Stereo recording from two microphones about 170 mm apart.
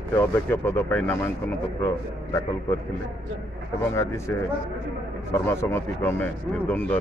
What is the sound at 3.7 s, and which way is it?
Speech, 15° left (ahead or behind).